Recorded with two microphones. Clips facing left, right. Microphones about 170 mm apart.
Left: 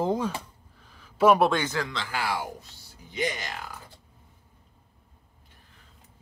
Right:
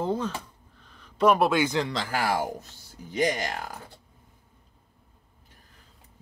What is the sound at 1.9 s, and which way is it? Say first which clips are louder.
Speech: right 4 dB; 45° right (ahead or behind).